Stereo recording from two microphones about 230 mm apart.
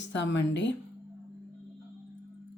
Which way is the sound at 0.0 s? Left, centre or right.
Left.